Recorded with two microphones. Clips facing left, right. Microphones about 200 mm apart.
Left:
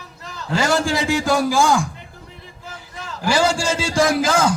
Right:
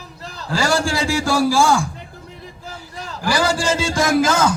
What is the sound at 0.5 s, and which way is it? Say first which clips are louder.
A man's voice: even; 20° left (ahead or behind).